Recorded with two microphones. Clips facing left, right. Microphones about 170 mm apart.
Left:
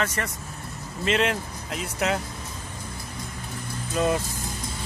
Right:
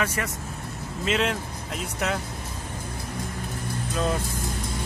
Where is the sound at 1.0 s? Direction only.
Centre (ahead or behind).